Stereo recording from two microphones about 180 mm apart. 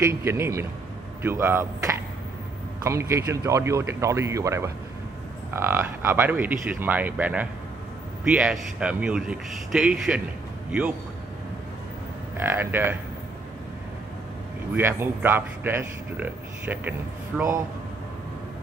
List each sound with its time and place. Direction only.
0.2 s a man's voice: 15° right (ahead or behind)
12.4 s a man's voice: 10° right (ahead or behind)
14.8 s a man's voice: 10° right (ahead or behind)